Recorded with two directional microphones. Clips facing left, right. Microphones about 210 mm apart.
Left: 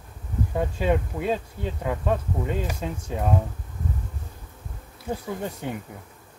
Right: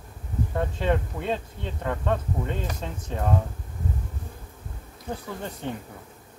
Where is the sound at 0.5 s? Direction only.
10° left (ahead or behind).